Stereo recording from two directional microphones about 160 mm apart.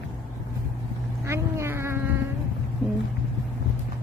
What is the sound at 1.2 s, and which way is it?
Cat, 15° right (ahead or behind).